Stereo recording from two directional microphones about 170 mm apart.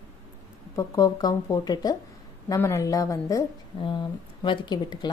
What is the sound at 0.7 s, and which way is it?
Speech, 20° left (ahead or behind).